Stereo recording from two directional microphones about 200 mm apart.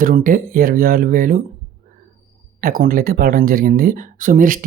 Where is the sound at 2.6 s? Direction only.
45° right (ahead or behind).